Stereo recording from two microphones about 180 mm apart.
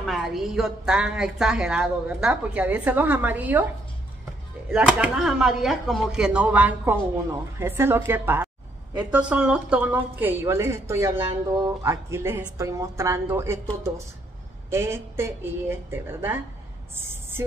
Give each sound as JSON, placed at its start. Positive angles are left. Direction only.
{"t": 0.0, "sound": "a woman's voice", "side_deg": 0}
{"t": 4.7, "sound": "a woman's voice", "side_deg": -5}